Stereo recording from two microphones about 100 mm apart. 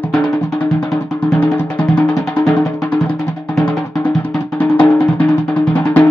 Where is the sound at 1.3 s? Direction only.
15° left (ahead or behind).